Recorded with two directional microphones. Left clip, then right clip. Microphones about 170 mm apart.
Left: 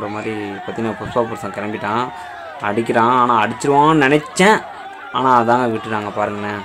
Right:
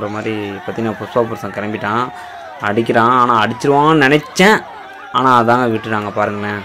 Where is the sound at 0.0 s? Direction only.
20° right (ahead or behind).